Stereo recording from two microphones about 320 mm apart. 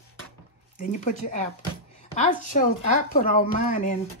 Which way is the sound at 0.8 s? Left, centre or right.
Left.